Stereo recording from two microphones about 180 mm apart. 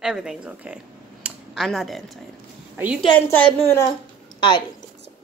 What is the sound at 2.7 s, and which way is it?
Speech, 10° right (ahead or behind).